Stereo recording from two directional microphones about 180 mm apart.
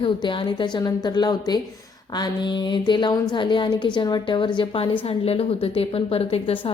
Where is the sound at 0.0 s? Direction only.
30° left (ahead or behind).